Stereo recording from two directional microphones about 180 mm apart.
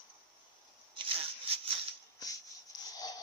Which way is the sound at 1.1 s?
30° right (ahead or behind).